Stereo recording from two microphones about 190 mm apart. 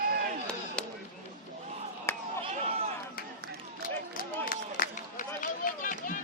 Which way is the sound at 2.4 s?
30° right (ahead or behind).